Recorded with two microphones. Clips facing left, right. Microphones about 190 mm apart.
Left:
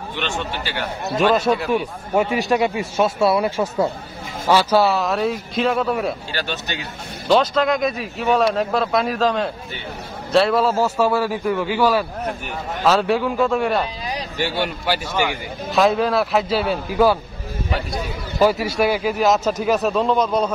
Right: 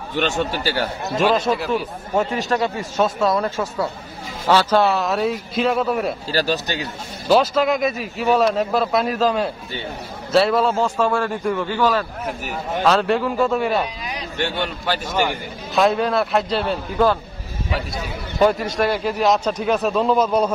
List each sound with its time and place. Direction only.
0.1 s speech: 40° right (ahead or behind)
1.1 s a man's voice: 5° left (ahead or behind)
6.3 s speech: 35° right (ahead or behind)
7.2 s a man's voice: 5° right (ahead or behind)
14.4 s a man's voice: 10° left (ahead or behind); by 20.5 s 10° right (ahead or behind)